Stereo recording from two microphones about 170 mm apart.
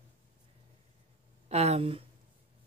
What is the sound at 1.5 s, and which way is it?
Speech, 40° right (ahead or behind).